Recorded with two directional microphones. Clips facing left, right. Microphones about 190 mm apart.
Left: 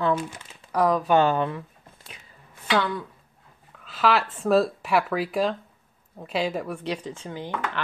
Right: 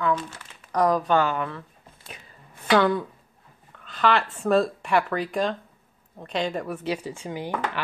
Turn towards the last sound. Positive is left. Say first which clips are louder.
# right 2 dB
turn(degrees=-10)  # may be behind; listen again after turning